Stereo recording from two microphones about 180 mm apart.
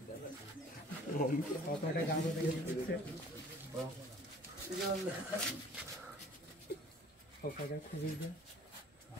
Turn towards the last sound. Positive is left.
turn(degrees=55)  # may be behind; listen again after turning